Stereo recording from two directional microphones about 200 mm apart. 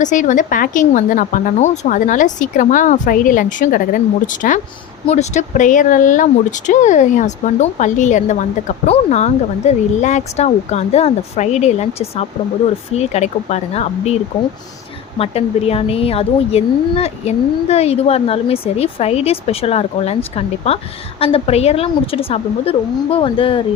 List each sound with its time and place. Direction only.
0.0 s speech: 40° left (ahead or behind)
15.2 s speech: 30° left (ahead or behind)